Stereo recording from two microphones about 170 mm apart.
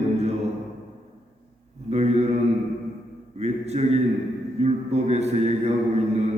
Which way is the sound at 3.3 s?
40° right (ahead or behind).